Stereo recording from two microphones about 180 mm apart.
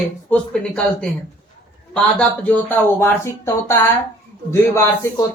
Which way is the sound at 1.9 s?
5° left (ahead or behind).